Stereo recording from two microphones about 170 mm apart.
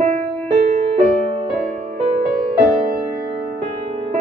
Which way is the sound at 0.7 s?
35° right (ahead or behind).